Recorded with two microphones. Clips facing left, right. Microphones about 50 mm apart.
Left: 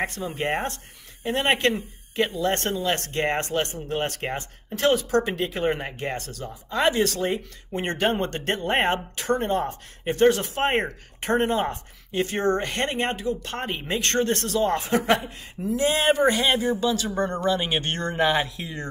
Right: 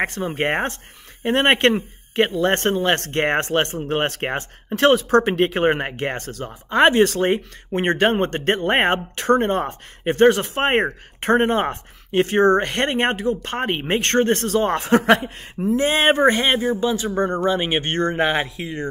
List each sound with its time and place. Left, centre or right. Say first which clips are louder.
0.0 s speech: right 5 dB; right
8.0 s speech: right 3 dB; right
15.6 s speech: right 4 dB; right
16.6 s speech: right 3 dB; right